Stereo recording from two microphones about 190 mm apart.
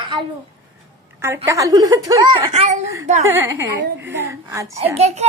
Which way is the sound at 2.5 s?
35° right (ahead or behind).